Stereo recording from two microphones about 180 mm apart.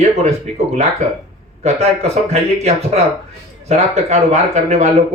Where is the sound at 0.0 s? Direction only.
35° right (ahead or behind).